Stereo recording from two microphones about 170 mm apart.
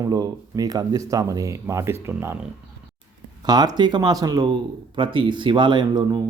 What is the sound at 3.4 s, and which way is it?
Speech, 25° right (ahead or behind).